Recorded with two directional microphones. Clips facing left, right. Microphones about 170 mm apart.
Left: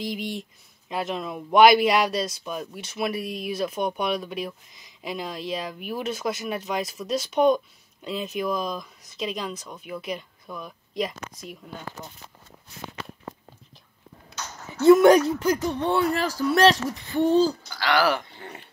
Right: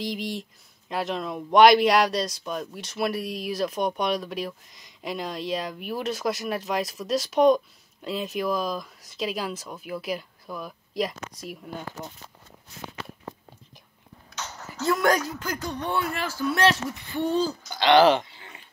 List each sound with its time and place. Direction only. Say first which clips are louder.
0.0 s speech: even; centre (ahead or behind)
14.3 s a sound: even; 15° left (ahead or behind)
14.9 s speech: left 9 dB; 20° left (ahead or behind)
16.7 s speech: left 4 dB; 15° left (ahead or behind)
17.6 s speech: right 5 dB; 20° right (ahead or behind)